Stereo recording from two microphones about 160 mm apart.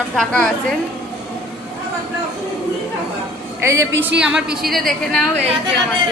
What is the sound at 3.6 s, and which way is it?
Speech, 20° right (ahead or behind).